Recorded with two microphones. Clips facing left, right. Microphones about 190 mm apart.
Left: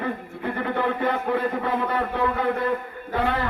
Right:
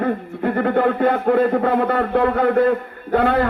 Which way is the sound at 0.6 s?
55° right (ahead or behind).